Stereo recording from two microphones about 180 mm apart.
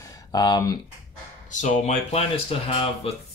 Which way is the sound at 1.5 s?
45° left (ahead or behind).